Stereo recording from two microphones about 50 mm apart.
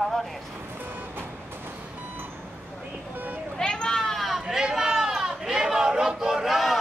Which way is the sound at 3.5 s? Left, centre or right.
Centre.